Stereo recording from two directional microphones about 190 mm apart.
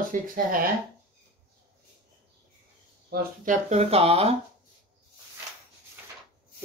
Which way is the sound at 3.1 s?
45° right (ahead or behind).